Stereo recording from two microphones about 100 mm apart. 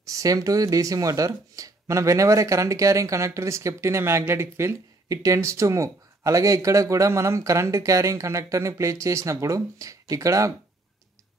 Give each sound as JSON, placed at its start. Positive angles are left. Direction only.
{"t": 0.0, "sound": "speech", "side_deg": -35}